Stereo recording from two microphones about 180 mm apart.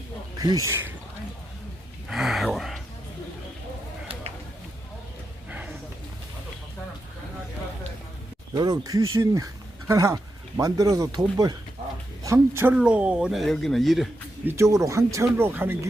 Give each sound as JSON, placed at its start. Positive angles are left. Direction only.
{"t": 0.3, "sound": "speech", "side_deg": -20}
{"t": 2.0, "sound": "gasp", "side_deg": 0}
{"t": 5.5, "sound": "a sound", "side_deg": -5}
{"t": 8.5, "sound": "speech", "side_deg": -20}
{"t": 14.4, "sound": "speech", "side_deg": -15}